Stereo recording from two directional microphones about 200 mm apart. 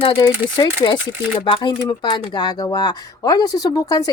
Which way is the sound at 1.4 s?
25° left (ahead or behind).